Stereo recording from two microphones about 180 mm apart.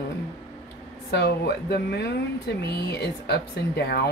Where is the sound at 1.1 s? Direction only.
65° left (ahead or behind).